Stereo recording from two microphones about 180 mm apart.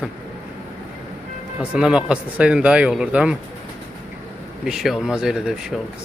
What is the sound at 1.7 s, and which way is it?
Speech, 5° right (ahead or behind).